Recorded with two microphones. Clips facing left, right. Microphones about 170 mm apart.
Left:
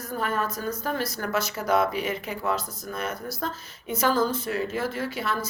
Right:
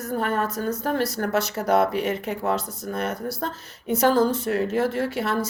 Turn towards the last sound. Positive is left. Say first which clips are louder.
# right 5 dB
turn(degrees=-70)  # may be behind; listen again after turning